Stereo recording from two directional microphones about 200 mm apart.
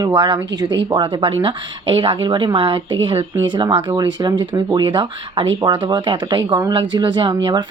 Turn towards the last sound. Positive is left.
turn(degrees=-20)  # may be behind; listen again after turning